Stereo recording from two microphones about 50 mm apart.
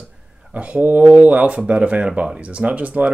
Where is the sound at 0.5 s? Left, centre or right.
Right.